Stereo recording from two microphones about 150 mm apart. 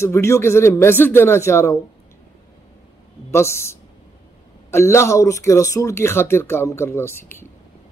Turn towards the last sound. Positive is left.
turn(degrees=15)  # may be behind; listen again after turning